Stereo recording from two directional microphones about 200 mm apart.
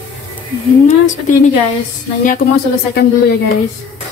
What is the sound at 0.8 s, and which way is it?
Speech, 35° left (ahead or behind).